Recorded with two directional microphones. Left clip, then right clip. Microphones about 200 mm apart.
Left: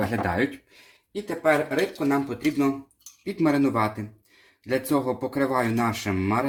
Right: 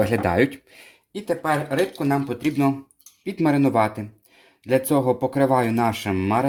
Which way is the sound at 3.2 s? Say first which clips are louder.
Right 2 dB; 40° right (ahead or behind).